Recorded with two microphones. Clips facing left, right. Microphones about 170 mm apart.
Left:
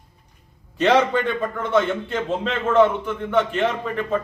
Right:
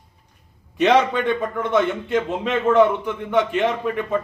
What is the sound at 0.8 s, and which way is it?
A man's voice, 15° right (ahead or behind).